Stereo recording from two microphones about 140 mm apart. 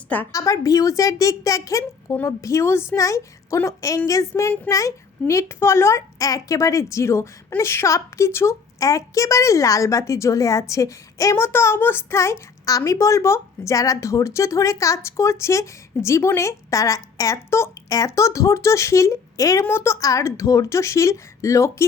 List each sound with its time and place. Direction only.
0.3 s a child's voice: 25° left (ahead or behind)